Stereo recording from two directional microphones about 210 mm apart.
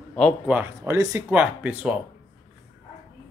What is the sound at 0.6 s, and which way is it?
A man's voice, 10° right (ahead or behind).